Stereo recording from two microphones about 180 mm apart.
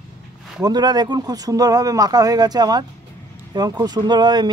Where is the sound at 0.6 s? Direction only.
25° right (ahead or behind).